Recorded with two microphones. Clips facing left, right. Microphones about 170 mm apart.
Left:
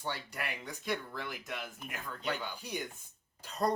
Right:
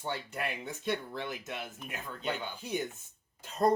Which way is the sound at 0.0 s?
20° right (ahead or behind).